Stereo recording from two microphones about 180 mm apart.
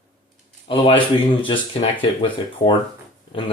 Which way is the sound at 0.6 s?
30° left (ahead or behind).